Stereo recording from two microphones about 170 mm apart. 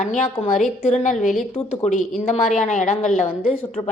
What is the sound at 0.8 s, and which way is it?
A woman's voice, 45° left (ahead or behind).